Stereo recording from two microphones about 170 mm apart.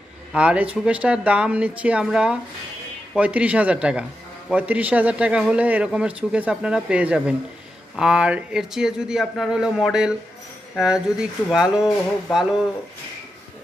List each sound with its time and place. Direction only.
0.3 s a man's voice: 5° right (ahead or behind)